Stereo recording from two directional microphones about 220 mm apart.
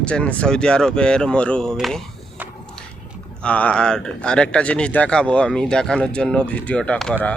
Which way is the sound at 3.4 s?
5° left (ahead or behind).